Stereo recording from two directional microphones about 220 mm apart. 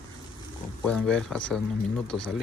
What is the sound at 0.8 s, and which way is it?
Speech, centre (ahead or behind).